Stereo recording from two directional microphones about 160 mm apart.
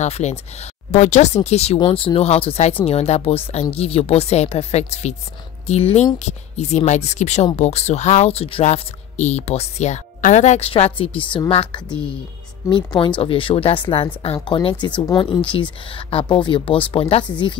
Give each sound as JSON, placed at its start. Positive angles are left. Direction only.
{"t": 0.0, "sound": "speech", "side_deg": 45}